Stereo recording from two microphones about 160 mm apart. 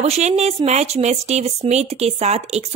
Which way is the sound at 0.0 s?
40° right (ahead or behind).